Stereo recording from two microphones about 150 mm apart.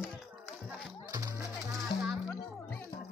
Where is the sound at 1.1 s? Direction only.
25° right (ahead or behind).